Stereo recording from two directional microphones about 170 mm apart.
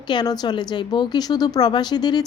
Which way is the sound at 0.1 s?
25° left (ahead or behind).